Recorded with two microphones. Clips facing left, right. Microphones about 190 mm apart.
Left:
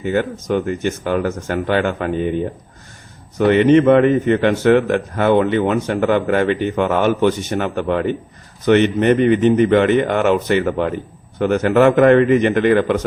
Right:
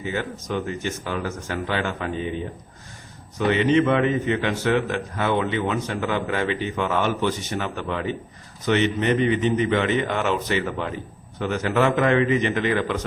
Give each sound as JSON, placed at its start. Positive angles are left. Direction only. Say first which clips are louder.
{"t": 0.0, "sound": "a man's voice", "louder": "left 9 dB", "side_deg": 55}
{"t": 3.3, "sound": "a man's voice", "louder": "left 7 dB", "side_deg": 55}